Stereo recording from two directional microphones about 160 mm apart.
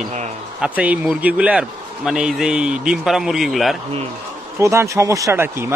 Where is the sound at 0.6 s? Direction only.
5° right (ahead or behind).